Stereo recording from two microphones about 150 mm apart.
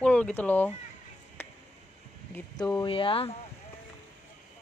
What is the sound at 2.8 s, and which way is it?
Speech, 35° left (ahead or behind).